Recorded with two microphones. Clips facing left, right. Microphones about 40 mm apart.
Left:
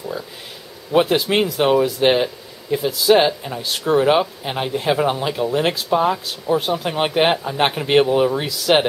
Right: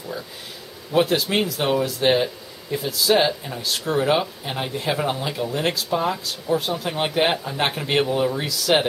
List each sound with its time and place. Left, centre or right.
0.9 s speech: centre